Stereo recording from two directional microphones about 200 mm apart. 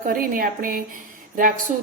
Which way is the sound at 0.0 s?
45° right (ahead or behind).